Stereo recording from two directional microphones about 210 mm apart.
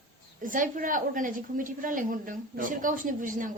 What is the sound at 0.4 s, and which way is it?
A woman's voice, 40° right (ahead or behind).